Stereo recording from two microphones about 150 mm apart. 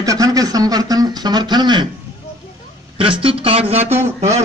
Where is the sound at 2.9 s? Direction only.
35° right (ahead or behind).